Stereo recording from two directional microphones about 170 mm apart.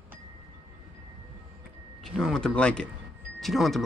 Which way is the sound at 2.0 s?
Centre (ahead or behind).